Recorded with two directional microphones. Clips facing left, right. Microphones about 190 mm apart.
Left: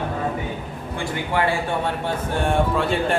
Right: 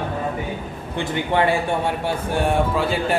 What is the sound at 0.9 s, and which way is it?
Speech, 25° right (ahead or behind).